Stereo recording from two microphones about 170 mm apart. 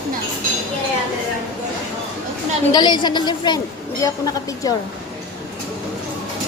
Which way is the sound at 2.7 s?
25° left (ahead or behind).